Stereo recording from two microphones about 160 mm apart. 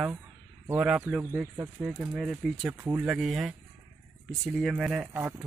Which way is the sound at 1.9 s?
Centre (ahead or behind).